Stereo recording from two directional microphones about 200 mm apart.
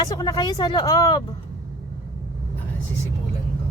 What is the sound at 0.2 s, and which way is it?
A woman's voice, 20° left (ahead or behind).